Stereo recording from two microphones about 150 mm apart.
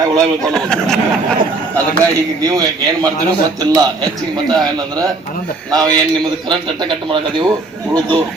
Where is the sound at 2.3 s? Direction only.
25° right (ahead or behind).